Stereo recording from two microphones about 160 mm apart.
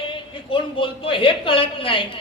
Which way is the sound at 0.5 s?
30° left (ahead or behind).